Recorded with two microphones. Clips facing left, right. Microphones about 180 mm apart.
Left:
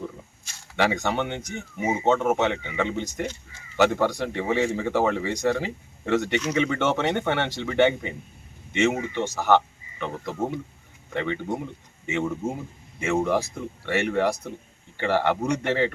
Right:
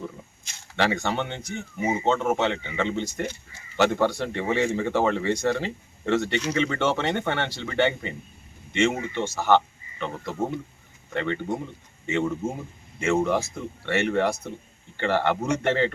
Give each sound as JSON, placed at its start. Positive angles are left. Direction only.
{"t": 0.8, "sound": "speech", "side_deg": 15}